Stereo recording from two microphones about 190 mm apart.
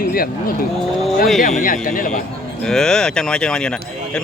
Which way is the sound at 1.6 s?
45° left (ahead or behind).